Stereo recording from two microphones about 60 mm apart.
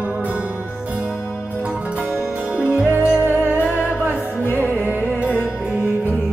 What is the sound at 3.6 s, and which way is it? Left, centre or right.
Music, left.